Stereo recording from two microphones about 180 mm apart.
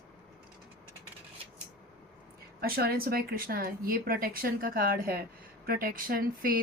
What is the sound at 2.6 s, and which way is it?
Speech, 60° right (ahead or behind).